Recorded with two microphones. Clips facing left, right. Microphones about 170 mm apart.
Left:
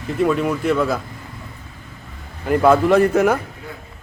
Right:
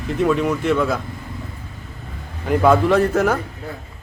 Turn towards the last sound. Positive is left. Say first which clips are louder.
# left 2 dB
turn(degrees=10)  # may be behind; listen again after turning